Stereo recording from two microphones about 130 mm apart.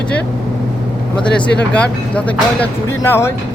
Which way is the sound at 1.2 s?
10° left (ahead or behind).